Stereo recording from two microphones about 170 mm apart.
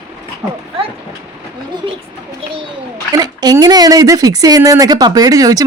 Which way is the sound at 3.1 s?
20° right (ahead or behind).